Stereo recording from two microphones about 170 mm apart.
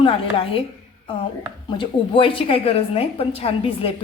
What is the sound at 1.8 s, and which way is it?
A woman's voice, 30° left (ahead or behind).